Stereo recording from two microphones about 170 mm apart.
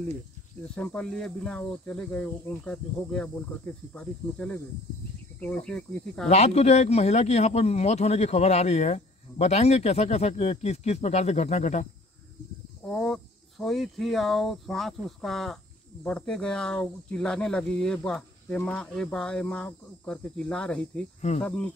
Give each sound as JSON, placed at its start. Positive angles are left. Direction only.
{"t": 0.6, "sound": "speech", "side_deg": 5}
{"t": 6.2, "sound": "speech", "side_deg": 40}
{"t": 12.8, "sound": "speech", "side_deg": 5}